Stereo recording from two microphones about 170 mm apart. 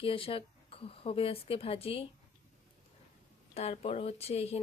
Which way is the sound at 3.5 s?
40° left (ahead or behind).